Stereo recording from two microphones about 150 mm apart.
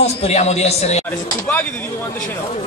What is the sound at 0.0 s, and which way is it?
Speech, 45° left (ahead or behind).